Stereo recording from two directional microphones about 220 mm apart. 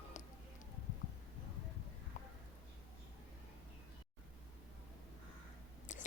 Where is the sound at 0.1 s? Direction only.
35° left (ahead or behind).